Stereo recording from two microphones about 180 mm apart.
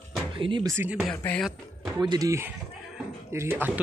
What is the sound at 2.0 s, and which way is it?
Speech, 20° right (ahead or behind).